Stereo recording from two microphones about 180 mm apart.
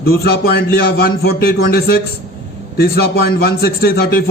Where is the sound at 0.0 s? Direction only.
60° left (ahead or behind).